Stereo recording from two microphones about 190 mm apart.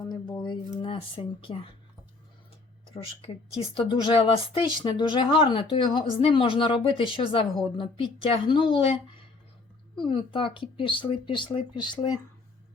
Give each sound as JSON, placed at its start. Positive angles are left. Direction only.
{"t": 0.1, "sound": "speech", "side_deg": 25}
{"t": 3.8, "sound": "speech", "side_deg": 25}